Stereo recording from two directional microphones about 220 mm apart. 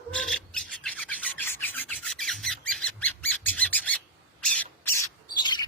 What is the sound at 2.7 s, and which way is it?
Squawk, 5° left (ahead or behind).